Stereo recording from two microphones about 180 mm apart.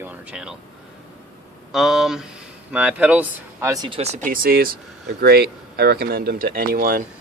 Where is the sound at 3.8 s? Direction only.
35° right (ahead or behind); by 7.0 s 55° right (ahead or behind).